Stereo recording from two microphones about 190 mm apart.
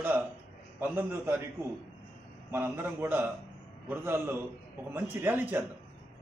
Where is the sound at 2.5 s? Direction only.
10° right (ahead or behind).